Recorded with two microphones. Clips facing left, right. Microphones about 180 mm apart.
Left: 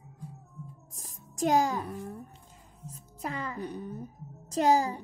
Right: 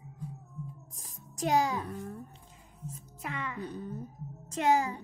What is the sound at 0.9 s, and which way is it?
Speech, 45° left (ahead or behind).